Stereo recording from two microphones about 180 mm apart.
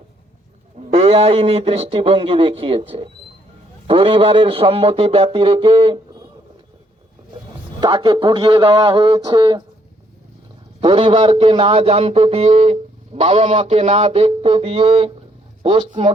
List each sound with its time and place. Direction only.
0.9 s a man's voice: 35° right (ahead or behind)
7.8 s speech: 25° right (ahead or behind)
10.8 s a man's voice: 30° right (ahead or behind)